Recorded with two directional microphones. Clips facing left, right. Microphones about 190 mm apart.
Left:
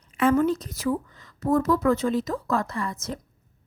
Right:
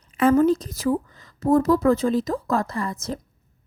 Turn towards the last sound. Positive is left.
turn(degrees=-35)  # may be behind; listen again after turning